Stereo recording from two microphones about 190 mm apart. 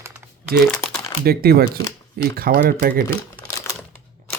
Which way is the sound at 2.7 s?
50° right (ahead or behind).